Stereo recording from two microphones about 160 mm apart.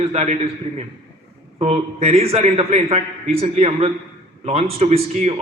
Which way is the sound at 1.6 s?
40° right (ahead or behind).